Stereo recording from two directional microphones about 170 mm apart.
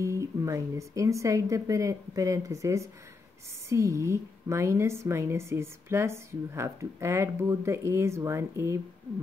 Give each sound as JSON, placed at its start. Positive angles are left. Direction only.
{"t": 0.0, "sound": "a woman's voice", "side_deg": -15}